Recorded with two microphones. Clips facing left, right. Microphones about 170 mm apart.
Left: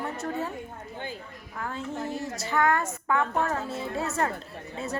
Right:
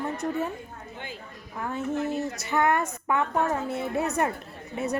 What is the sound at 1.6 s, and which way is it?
A woman's voice, 20° right (ahead or behind).